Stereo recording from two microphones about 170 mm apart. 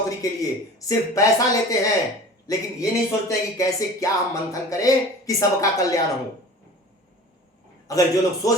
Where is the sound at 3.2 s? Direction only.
20° left (ahead or behind).